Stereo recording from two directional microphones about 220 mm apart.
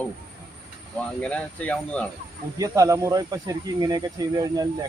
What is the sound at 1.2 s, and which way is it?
Speech, 5° left (ahead or behind).